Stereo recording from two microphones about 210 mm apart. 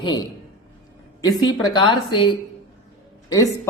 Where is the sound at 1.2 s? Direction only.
20° left (ahead or behind).